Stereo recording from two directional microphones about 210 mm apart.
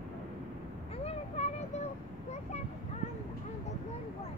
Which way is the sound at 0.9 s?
30° left (ahead or behind).